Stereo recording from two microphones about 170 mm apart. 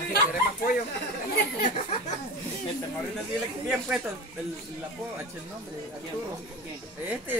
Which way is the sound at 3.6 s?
Centre (ahead or behind).